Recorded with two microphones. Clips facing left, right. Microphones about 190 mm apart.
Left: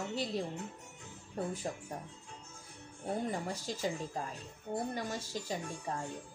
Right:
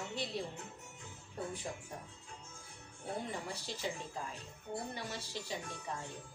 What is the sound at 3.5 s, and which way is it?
Speech, 45° left (ahead or behind).